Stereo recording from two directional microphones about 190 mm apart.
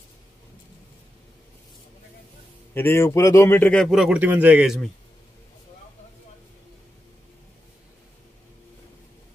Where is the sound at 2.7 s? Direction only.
10° left (ahead or behind); by 4.7 s 5° right (ahead or behind).